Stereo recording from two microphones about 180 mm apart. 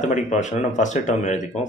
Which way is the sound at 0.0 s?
40° left (ahead or behind).